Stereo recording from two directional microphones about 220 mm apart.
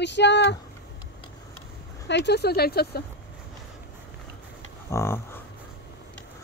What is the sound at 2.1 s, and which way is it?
Speech, 50° left (ahead or behind).